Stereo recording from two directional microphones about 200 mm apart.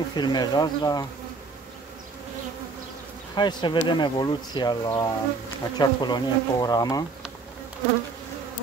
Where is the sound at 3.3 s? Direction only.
20° left (ahead or behind).